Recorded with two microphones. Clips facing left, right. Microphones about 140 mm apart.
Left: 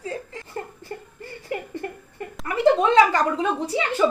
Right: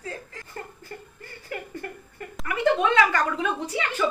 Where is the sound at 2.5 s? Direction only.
35° left (ahead or behind).